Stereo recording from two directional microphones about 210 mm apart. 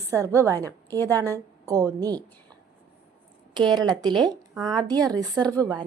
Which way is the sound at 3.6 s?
20° right (ahead or behind).